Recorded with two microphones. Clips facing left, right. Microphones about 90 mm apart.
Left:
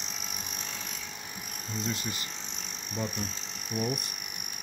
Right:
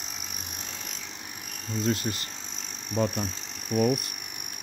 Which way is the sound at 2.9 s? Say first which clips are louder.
Right 7 dB; 45° right (ahead or behind).